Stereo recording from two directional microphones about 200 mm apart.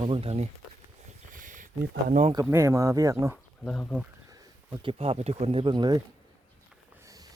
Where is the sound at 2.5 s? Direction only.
15° right (ahead or behind).